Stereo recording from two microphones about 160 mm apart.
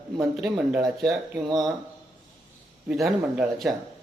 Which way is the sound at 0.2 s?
Centre (ahead or behind).